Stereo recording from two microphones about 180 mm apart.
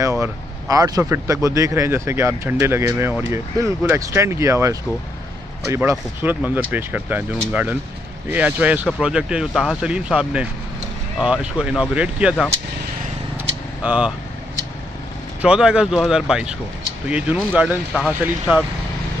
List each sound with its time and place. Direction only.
0.0 s speech: 15° right (ahead or behind)
13.8 s speech: 5° right (ahead or behind)
15.4 s speech: 5° right (ahead or behind)